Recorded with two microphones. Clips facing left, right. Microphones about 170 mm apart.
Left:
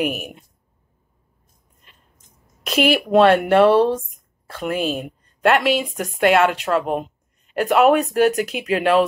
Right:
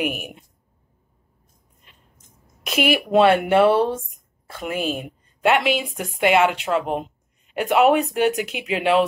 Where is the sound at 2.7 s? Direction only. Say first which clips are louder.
Left 3 dB; 10° right (ahead or behind).